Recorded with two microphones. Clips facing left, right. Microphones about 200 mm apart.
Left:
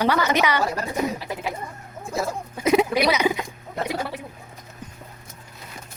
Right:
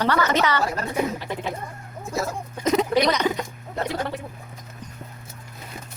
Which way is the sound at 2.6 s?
10° left (ahead or behind).